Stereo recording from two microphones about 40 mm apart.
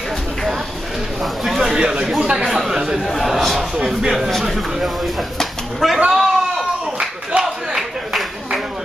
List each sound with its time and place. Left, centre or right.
1.2 s speech: centre
1.6 s a sound: centre
2.4 s chatter: centre
3.2 s a man's voice: centre
3.5 s speech: centre
4.3 s speech: centre
5.4 s a sound: centre
5.9 s a man's voice: centre
7.0 s a sound: centre